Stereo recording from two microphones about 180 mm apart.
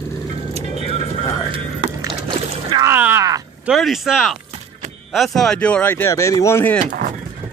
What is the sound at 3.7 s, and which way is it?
Speech, centre (ahead or behind).